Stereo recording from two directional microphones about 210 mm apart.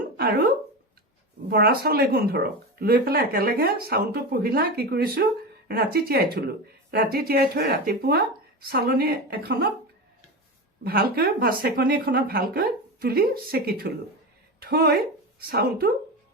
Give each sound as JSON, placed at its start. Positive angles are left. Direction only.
{"t": 0.2, "sound": "speech", "side_deg": -45}
{"t": 1.5, "sound": "speech", "side_deg": -50}
{"t": 10.8, "sound": "a woman's voice", "side_deg": -45}